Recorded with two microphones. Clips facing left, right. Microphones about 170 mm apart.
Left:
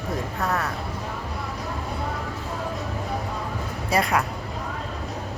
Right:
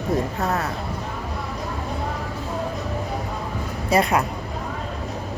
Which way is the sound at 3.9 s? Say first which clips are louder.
Right 3 dB; 20° right (ahead or behind).